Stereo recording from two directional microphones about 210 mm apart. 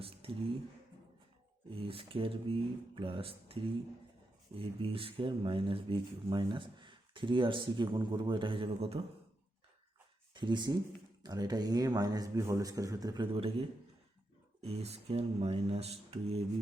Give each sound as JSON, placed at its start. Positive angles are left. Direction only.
{"t": 0.0, "sound": "speech", "side_deg": -25}
{"t": 1.7, "sound": "speech", "side_deg": -25}
{"t": 10.3, "sound": "speech", "side_deg": -20}